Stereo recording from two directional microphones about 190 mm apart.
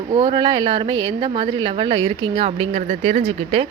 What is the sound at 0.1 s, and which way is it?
A woman's voice, 25° right (ahead or behind).